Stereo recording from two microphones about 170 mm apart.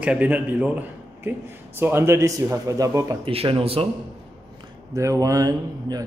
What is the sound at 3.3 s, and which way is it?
Speech, 35° right (ahead or behind).